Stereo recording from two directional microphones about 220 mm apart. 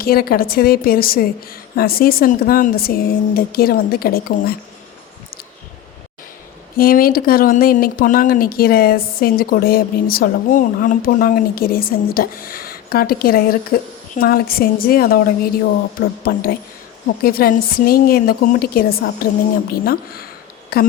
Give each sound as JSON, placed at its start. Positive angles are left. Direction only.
{"t": 0.0, "sound": "a woman's voice", "side_deg": 40}
{"t": 6.7, "sound": "speech", "side_deg": 40}
{"t": 16.2, "sound": "a woman's voice", "side_deg": 40}